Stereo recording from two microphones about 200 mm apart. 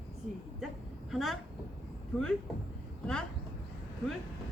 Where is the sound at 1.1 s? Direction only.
Centre (ahead or behind).